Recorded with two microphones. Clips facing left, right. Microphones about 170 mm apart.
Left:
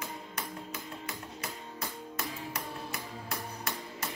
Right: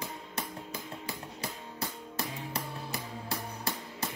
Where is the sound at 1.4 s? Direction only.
30° right (ahead or behind).